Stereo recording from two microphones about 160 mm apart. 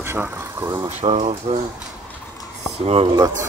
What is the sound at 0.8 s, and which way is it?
Speech, 40° right (ahead or behind).